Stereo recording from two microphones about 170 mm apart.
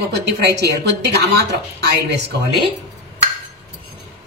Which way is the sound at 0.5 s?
75° right (ahead or behind).